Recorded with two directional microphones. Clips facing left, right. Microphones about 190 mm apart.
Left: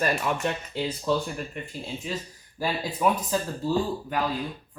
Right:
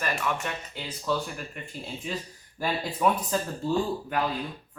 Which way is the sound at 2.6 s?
5° left (ahead or behind).